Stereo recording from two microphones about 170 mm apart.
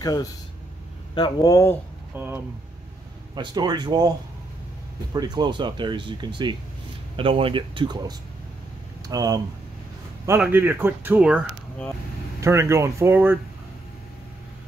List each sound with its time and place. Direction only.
0.0 s speech: 20° left (ahead or behind)
2.1 s speech: 10° right (ahead or behind)
3.3 s speech: 25° right (ahead or behind)
5.1 s speech: 25° right (ahead or behind)
10.4 s speech: 10° right (ahead or behind)